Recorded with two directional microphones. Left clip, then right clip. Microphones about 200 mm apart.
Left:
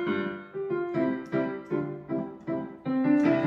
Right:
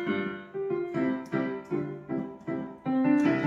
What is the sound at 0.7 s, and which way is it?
Music, 20° left (ahead or behind).